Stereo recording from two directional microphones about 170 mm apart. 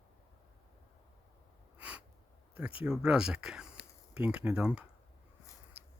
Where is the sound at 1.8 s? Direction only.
10° right (ahead or behind).